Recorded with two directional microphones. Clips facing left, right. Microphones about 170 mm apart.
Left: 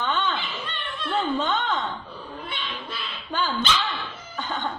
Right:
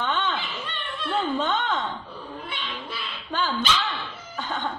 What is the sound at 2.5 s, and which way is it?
Dog, centre (ahead or behind).